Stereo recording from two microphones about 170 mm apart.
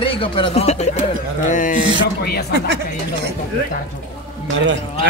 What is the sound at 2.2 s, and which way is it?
Speech, 70° left (ahead or behind).